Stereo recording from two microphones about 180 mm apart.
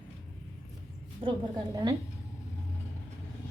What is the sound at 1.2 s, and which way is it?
Speech, 30° right (ahead or behind).